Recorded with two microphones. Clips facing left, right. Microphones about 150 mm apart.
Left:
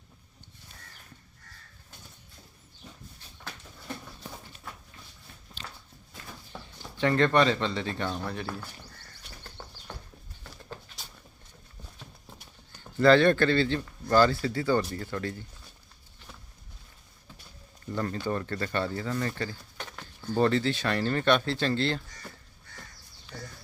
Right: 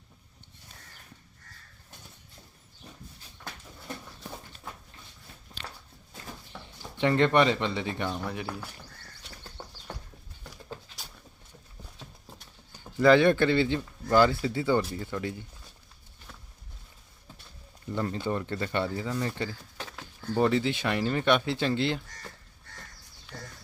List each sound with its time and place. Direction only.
6.6 s speech: 20° right (ahead or behind)
9.6 s a sound: 20° right (ahead or behind)
12.8 s speech: 15° right (ahead or behind)
17.8 s speech: 15° right (ahead or behind)